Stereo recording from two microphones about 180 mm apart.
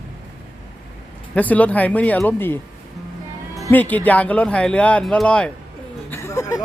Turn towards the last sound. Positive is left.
turn(degrees=15)  # may be behind; listen again after turning